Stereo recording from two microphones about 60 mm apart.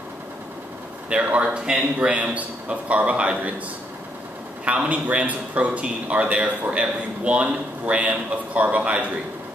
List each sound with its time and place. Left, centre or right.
1.1 s a man's voice: right
4.6 s a man's voice: right